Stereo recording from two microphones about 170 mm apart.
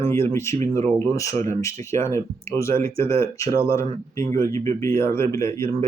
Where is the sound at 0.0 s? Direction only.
15° left (ahead or behind).